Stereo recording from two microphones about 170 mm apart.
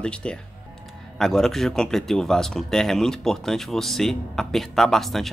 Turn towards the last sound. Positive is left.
turn(degrees=0)  # may be behind; listen again after turning